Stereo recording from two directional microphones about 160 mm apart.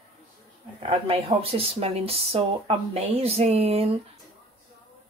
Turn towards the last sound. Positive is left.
turn(degrees=-40)  # may be behind; listen again after turning